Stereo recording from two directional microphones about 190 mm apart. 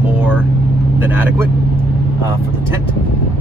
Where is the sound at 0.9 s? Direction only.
10° right (ahead or behind).